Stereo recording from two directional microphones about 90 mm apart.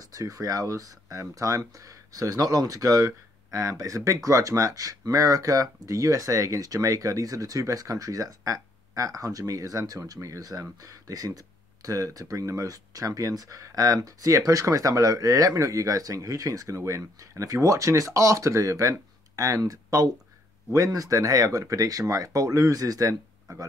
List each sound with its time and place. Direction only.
0.0 s speech: 40° right (ahead or behind)